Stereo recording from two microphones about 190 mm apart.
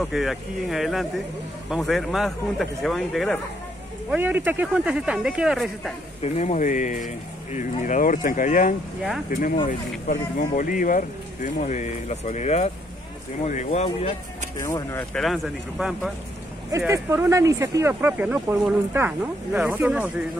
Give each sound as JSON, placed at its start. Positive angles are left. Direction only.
{"t": 0.0, "sound": "speech", "side_deg": 0}
{"t": 4.1, "sound": "speech", "side_deg": -10}
{"t": 6.2, "sound": "speech", "side_deg": 35}
{"t": 14.6, "sound": "speech", "side_deg": 15}
{"t": 15.1, "sound": "speech", "side_deg": 0}
{"t": 16.7, "sound": "speech", "side_deg": -15}